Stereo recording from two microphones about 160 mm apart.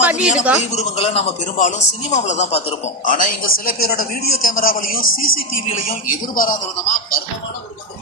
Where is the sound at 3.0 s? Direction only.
55° left (ahead or behind).